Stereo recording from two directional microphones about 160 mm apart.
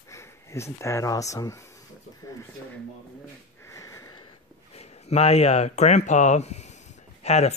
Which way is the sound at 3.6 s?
20° left (ahead or behind).